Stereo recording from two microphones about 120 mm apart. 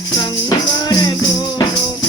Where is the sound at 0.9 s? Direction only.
35° left (ahead or behind).